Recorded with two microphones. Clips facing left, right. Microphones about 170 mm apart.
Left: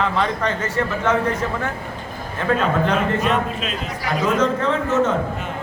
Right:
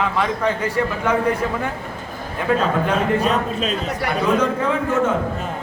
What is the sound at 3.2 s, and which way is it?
Speech, 35° right (ahead or behind).